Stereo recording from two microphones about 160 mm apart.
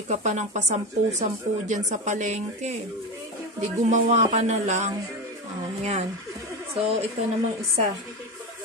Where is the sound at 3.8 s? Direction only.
50° right (ahead or behind).